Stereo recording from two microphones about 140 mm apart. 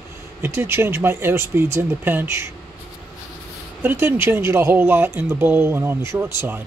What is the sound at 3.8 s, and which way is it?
Speech, 15° right (ahead or behind).